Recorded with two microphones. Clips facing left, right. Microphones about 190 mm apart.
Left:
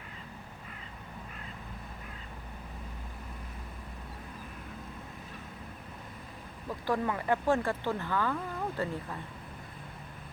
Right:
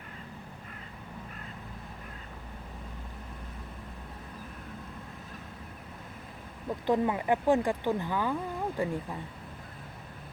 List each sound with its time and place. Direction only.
6.7 s speech: 20° right (ahead or behind)